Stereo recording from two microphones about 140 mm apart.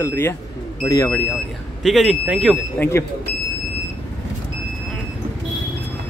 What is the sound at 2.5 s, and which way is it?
Speech, 15° left (ahead or behind).